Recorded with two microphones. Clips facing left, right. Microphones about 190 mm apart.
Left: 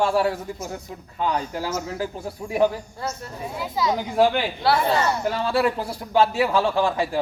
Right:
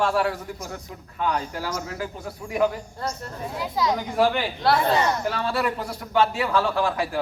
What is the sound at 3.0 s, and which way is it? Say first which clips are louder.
Speech: right 1 dB; 5° left (ahead or behind).